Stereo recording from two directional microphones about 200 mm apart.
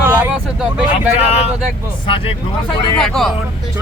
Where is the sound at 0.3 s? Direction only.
5° right (ahead or behind).